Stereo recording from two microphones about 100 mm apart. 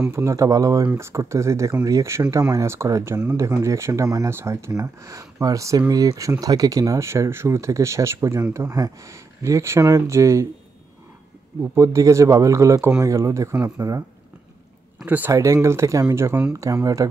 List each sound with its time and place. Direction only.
0.1 s speech: 30° right (ahead or behind)
11.6 s speech: 30° right (ahead or behind)
15.0 s speech: 15° right (ahead or behind)
15.3 s speech: 30° right (ahead or behind)